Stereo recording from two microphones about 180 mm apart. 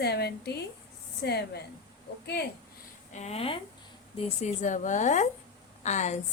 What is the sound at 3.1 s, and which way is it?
A woman's voice, 35° left (ahead or behind).